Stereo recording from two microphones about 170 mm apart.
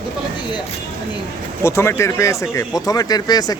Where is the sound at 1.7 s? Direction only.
15° left (ahead or behind).